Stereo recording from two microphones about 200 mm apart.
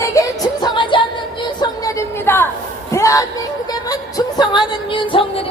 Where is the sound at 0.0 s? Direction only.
15° left (ahead or behind).